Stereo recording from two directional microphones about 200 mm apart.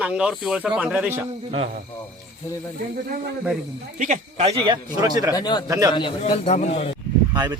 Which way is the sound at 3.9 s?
40° right (ahead or behind).